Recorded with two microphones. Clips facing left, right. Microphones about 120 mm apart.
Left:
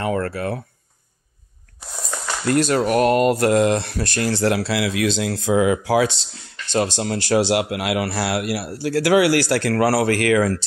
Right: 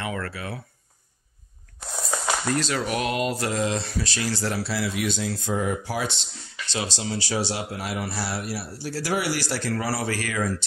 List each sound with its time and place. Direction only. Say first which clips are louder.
0.0 s speech: left 9 dB; 45° left (ahead or behind)
1.9 s a sound: right 2 dB; 5° right (ahead or behind)
2.4 s speech: left 8 dB; 55° left (ahead or behind); by 6.2 s 90° left
6.7 s speech: left 8 dB; 55° left (ahead or behind); by 10.6 s 80° left